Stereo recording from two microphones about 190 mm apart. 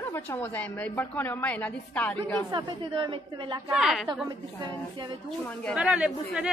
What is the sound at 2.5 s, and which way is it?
A woman's voice, 25° right (ahead or behind).